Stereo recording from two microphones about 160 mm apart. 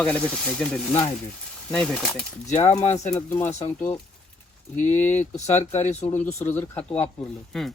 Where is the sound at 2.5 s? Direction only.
45° left (ahead or behind).